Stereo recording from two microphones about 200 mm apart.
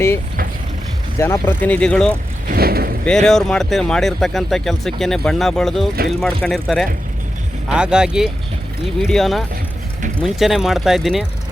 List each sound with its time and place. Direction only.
1.2 s speech: 10° left (ahead or behind)
2.5 s speech: 50° right (ahead or behind)
3.1 s speech: centre (ahead or behind)